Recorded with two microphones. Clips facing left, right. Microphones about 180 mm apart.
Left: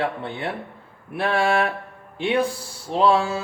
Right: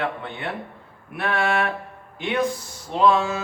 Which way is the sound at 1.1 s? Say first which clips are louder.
Left 3 dB; 30° left (ahead or behind).